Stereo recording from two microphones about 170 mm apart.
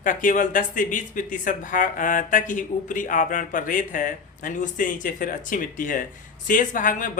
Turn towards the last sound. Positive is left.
turn(degrees=50)  # may be behind; listen again after turning